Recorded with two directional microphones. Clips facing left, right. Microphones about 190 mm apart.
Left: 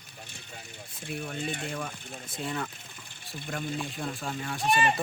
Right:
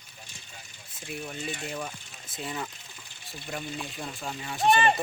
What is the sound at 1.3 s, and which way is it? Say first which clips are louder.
Speech: left 1 dB; 55° left (ahead or behind).